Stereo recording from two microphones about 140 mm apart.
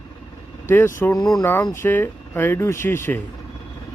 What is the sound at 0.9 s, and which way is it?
Speech, 20° left (ahead or behind).